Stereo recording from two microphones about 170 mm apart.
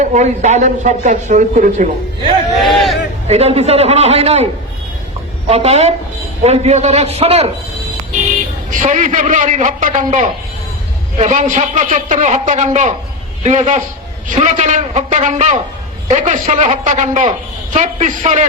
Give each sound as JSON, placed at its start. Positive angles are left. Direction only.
{"t": 0.0, "sound": "speech", "side_deg": -45}
{"t": 2.6, "sound": "hubbub", "side_deg": 0}
{"t": 3.2, "sound": "a man's voice", "side_deg": -40}
{"t": 5.5, "sound": "a man's voice", "side_deg": -35}
{"t": 8.7, "sound": "speech", "side_deg": -45}